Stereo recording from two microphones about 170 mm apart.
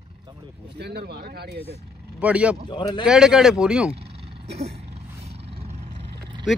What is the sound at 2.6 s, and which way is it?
Speech, 25° left (ahead or behind).